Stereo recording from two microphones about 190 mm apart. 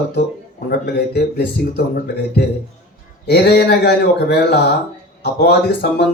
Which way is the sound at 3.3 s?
60° left (ahead or behind).